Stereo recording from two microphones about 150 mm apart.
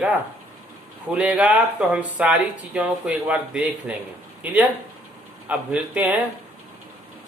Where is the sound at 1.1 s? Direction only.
10° right (ahead or behind).